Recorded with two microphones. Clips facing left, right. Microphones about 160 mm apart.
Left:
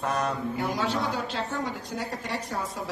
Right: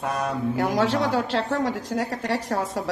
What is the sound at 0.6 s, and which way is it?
A woman's voice, 85° right.